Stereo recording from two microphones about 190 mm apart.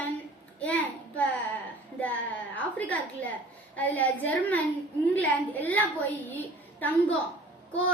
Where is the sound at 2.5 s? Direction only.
10° left (ahead or behind).